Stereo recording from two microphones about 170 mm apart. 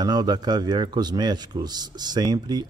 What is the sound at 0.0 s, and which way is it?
A man's voice, 25° right (ahead or behind).